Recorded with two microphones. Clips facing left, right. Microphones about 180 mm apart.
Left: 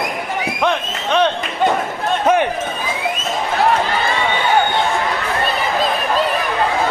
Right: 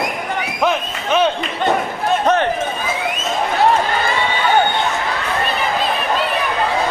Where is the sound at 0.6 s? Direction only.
5° right (ahead or behind).